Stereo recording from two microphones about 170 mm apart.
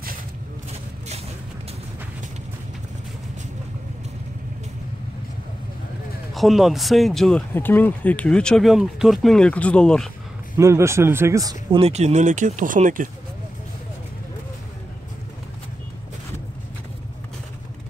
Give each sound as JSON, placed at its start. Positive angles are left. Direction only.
{"t": 6.3, "sound": "speech", "side_deg": 0}
{"t": 10.6, "sound": "speech", "side_deg": -15}
{"t": 11.8, "sound": "speech", "side_deg": -40}